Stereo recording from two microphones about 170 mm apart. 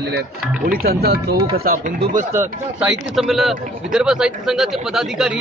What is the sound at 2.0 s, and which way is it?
Speech, 45° right (ahead or behind).